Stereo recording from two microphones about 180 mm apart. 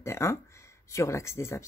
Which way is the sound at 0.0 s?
15° left (ahead or behind).